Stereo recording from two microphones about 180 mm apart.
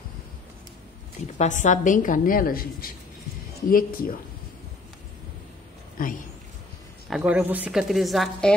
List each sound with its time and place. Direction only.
1.2 s a woman's voice: 40° left (ahead or behind)
6.0 s a woman's voice: 50° left (ahead or behind)
7.1 s a woman's voice: 5° right (ahead or behind)